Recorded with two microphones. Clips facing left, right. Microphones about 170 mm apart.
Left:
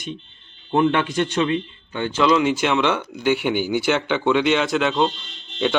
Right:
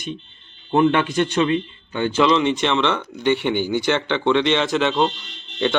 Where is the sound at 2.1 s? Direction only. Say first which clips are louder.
Even; centre (ahead or behind).